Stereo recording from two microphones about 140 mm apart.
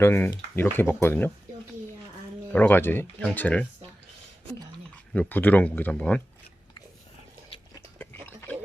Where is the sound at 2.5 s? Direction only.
15° left (ahead or behind).